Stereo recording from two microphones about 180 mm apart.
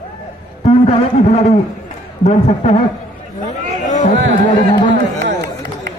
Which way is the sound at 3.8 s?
40° left (ahead or behind).